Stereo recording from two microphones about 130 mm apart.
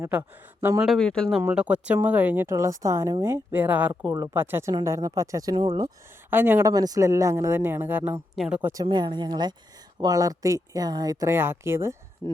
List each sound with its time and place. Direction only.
0.0 s speech: 15° right (ahead or behind)
0.8 s speech: centre (ahead or behind)
1.4 s speech: 10° right (ahead or behind); by 5.6 s 30° right (ahead or behind)
6.3 s speech: 15° right (ahead or behind)
8.6 s speech: 30° right (ahead or behind)
12.2 s speech: 30° right (ahead or behind)